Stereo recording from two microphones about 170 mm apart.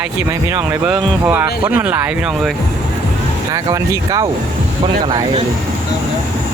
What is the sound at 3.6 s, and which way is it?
Speech, 20° right (ahead or behind).